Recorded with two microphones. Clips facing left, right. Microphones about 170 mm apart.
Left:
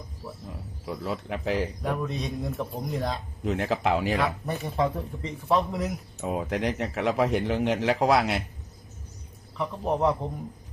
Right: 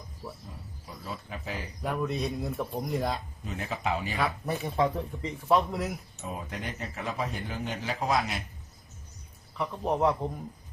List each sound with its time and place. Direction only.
0.9 s speech: 75° left (ahead or behind)
1.8 s a man's voice: 5° right (ahead or behind)
3.4 s speech: 80° left
4.2 s a man's voice: centre (ahead or behind)
6.2 s speech: 80° left
9.6 s a man's voice: centre (ahead or behind)